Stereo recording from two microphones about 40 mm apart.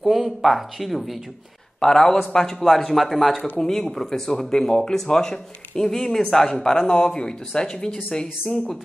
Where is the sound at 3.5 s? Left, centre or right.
Centre.